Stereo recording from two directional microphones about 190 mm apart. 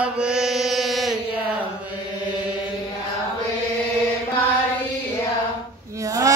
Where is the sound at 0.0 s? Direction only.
5° right (ahead or behind).